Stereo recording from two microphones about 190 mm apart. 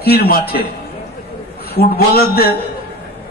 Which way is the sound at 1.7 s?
55° left (ahead or behind).